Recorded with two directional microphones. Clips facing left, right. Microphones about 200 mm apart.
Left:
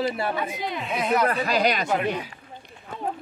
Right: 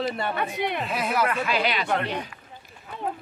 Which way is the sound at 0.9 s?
5° right (ahead or behind).